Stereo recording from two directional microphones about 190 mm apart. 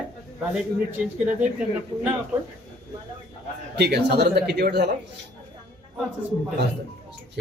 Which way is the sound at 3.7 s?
60° right (ahead or behind).